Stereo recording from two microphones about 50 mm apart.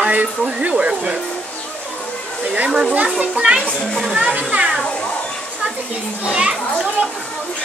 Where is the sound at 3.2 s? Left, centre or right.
Centre.